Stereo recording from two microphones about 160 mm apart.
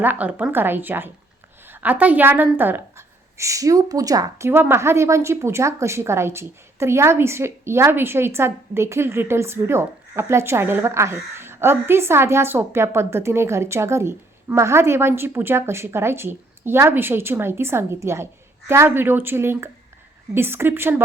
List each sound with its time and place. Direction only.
0.0 s a woman's voice: 10° right (ahead or behind)